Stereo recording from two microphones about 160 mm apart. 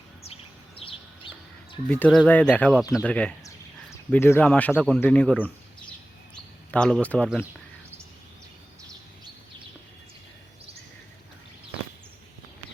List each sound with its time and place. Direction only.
0.8 s bird: 35° left (ahead or behind)
1.9 s speech: 5° left (ahead or behind)
6.3 s a sound: 5° left (ahead or behind)